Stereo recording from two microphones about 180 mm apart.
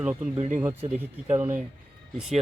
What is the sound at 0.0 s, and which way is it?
Speech, 10° right (ahead or behind).